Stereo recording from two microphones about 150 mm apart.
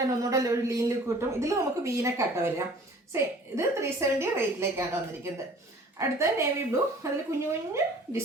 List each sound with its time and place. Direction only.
0.2 s a woman's voice: 20° right (ahead or behind)